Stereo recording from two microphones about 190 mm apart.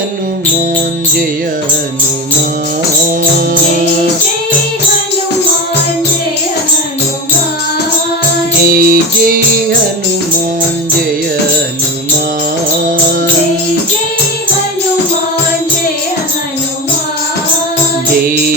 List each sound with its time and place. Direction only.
8.7 s music: 50° right (ahead or behind)